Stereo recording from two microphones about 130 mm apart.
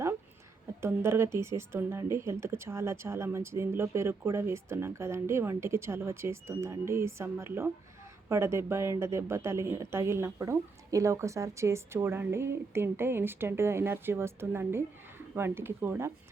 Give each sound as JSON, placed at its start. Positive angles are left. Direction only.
{"t": 0.8, "sound": "speech", "side_deg": -20}